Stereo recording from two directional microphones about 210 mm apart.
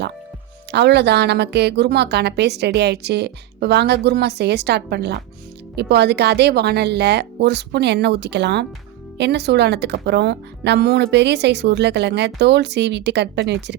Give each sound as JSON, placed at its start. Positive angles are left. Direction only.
{"t": 0.7, "sound": "a woman's voice", "side_deg": -55}